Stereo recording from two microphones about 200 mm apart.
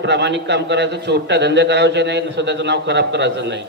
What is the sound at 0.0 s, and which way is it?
A man's voice, 60° right (ahead or behind).